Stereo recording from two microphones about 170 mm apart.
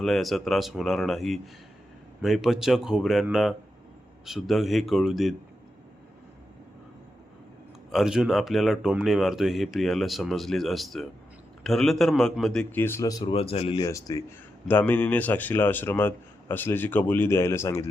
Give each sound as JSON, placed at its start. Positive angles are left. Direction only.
{"t": 0.0, "sound": "speech", "side_deg": 0}
{"t": 7.9, "sound": "speech", "side_deg": 0}
{"t": 13.3, "sound": "speech", "side_deg": 35}
{"t": 13.8, "sound": "a man's voice", "side_deg": 20}